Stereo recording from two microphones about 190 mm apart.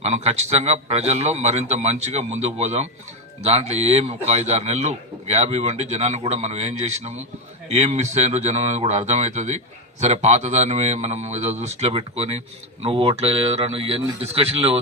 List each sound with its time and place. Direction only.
0.0 s speech: 35° right (ahead or behind)